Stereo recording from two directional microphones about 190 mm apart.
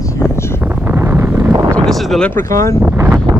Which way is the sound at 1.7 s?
Centre (ahead or behind).